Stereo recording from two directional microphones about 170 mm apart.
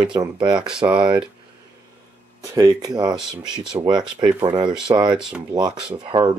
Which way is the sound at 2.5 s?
20° right (ahead or behind).